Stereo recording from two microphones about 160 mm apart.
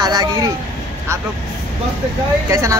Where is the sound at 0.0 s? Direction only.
25° right (ahead or behind).